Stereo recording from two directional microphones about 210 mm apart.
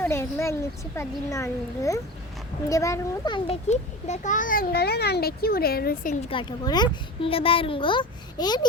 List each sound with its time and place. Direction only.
0.0 s a sound: 10° left (ahead or behind)
0.9 s a child's voice: 15° left (ahead or behind); by 6.1 s 45° left (ahead or behind)
6.3 s speech: 20° left (ahead or behind)